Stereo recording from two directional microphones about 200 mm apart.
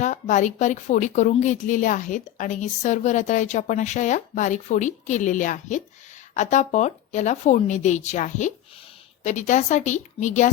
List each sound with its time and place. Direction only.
0.0 s a woman's voice: 35° left (ahead or behind)